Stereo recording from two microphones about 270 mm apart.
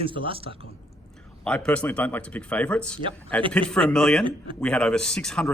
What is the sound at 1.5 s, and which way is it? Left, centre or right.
Speech, centre.